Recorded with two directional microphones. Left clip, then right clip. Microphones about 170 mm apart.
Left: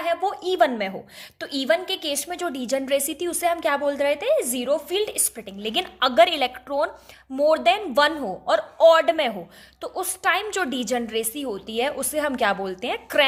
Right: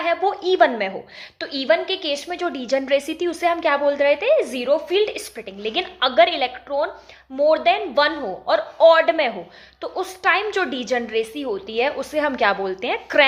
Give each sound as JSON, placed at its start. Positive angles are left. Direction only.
{"t": 0.0, "sound": "a woman's voice", "side_deg": 35}